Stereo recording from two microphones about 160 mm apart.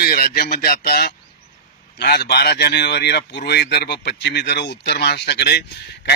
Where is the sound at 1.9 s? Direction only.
90° left.